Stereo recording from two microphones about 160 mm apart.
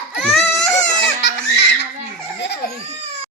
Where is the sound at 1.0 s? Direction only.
90° left.